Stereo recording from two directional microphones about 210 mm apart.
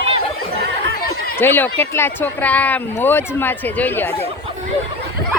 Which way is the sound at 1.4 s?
10° left (ahead or behind).